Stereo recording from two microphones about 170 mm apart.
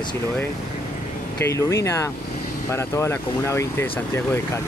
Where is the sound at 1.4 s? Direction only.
15° left (ahead or behind).